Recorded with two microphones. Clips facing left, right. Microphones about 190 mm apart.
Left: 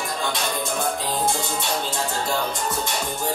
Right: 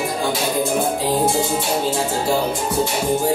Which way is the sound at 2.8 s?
10° right (ahead or behind).